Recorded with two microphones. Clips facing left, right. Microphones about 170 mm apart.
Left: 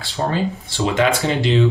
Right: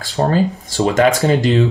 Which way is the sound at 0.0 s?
40° right (ahead or behind).